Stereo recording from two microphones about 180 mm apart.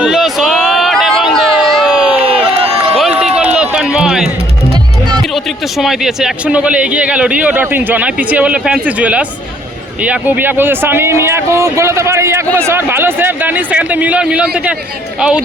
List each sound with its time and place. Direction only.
0.0 s a sound: centre (ahead or behind)
2.6 s run: 30° right (ahead or behind)
3.0 s run: 5° right (ahead or behind)
5.2 s a man's voice: centre (ahead or behind)